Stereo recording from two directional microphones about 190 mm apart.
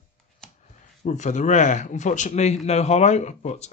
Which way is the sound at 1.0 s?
40° left (ahead or behind).